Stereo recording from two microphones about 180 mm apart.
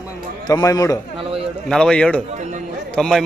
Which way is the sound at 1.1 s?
30° right (ahead or behind).